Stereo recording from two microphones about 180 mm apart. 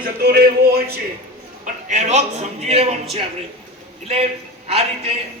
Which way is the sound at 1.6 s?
40° right (ahead or behind).